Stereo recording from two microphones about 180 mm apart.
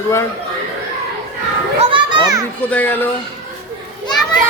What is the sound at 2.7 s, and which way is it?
Speech, 10° left (ahead or behind).